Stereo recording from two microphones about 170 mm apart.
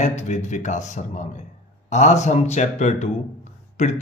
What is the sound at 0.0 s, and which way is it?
Speech, 40° left (ahead or behind).